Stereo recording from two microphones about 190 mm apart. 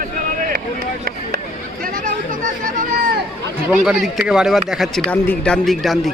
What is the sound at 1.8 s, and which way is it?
Chatter, 45° right (ahead or behind).